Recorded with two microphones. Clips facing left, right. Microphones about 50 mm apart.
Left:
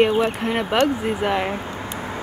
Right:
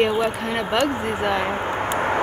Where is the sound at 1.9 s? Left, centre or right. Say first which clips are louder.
Right 11 dB; right.